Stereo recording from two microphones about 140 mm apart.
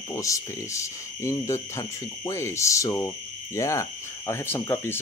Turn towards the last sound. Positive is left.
turn(degrees=15)  # may be behind; listen again after turning